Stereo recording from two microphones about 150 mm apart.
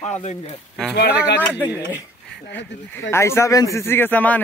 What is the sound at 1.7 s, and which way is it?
Speech, 10° right (ahead or behind).